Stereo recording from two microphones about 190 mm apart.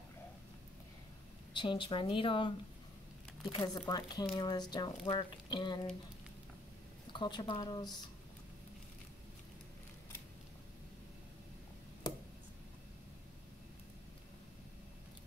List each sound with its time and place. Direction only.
1.5 s speech: 25° left (ahead or behind)
3.5 s speech: 20° left (ahead or behind)
7.1 s speech: 25° left (ahead or behind)